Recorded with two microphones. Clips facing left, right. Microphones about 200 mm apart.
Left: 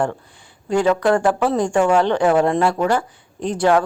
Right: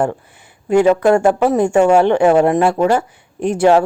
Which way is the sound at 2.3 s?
20° right (ahead or behind).